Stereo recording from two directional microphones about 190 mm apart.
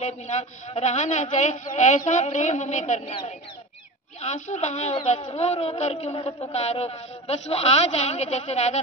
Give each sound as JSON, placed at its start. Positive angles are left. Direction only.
{"t": 0.0, "sound": "a man's voice", "side_deg": 35}
{"t": 4.2, "sound": "a man's voice", "side_deg": 40}